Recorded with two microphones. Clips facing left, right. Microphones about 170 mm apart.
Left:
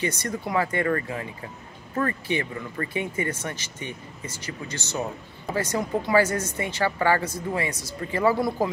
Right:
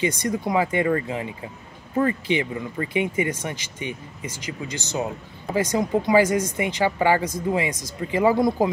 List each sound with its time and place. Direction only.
0.0 s speech: 15° right (ahead or behind)